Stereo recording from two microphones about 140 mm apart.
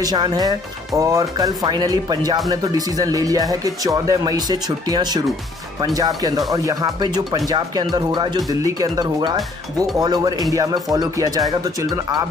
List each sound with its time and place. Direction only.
0.0 s speech: 30° right (ahead or behind)